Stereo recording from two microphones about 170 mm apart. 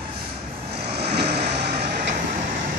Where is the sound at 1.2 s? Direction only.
70° right (ahead or behind).